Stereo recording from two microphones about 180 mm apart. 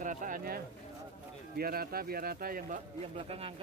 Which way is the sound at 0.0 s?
45° right (ahead or behind).